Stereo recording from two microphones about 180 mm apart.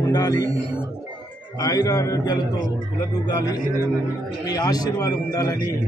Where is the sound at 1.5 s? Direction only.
20° left (ahead or behind).